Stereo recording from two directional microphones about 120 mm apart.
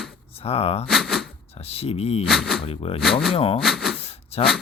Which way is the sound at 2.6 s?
50° left (ahead or behind).